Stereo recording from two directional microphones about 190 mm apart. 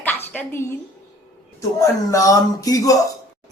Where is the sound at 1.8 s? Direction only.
15° left (ahead or behind).